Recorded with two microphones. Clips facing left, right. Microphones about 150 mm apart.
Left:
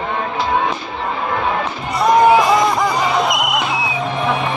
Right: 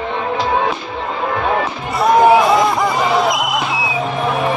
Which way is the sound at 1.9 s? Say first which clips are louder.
Right 1 dB; centre (ahead or behind).